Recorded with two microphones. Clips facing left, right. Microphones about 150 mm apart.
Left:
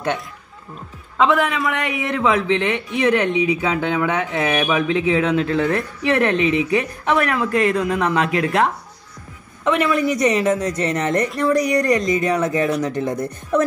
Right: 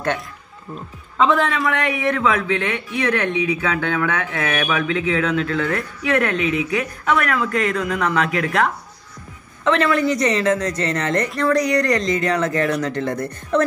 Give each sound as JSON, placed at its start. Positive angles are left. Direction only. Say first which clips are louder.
{"t": 1.1, "sound": "a man's voice", "louder": "even", "side_deg": 5}
{"t": 9.8, "sound": "a woman's voice", "louder": "left 1 dB", "side_deg": 10}